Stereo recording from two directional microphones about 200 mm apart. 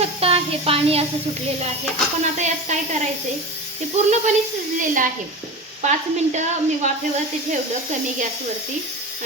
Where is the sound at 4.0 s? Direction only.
35° right (ahead or behind).